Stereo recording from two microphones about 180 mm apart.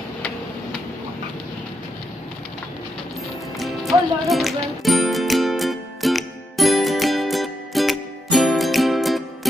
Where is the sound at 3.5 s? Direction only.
Centre (ahead or behind).